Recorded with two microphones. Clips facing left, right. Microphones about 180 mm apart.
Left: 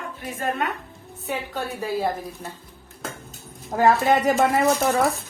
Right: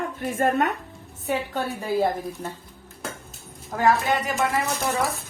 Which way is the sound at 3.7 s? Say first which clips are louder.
Left 3 dB; 40° left (ahead or behind).